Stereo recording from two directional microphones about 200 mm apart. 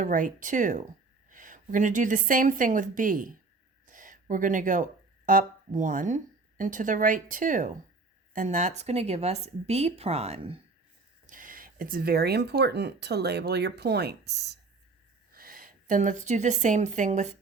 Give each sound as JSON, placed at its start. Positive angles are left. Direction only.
{"t": 0.0, "sound": "a woman's voice", "side_deg": -40}
{"t": 11.3, "sound": "a woman's voice", "side_deg": -40}